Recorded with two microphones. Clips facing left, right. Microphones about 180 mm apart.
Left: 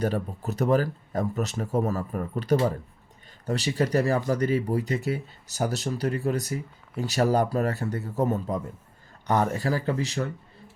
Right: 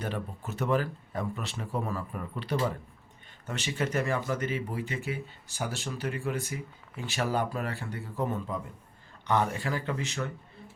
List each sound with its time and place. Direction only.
0.0 s speech: 40° left (ahead or behind)